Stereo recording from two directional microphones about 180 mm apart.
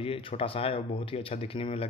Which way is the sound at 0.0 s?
30° left (ahead or behind).